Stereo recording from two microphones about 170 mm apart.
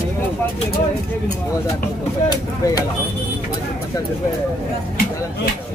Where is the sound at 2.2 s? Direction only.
20° left (ahead or behind).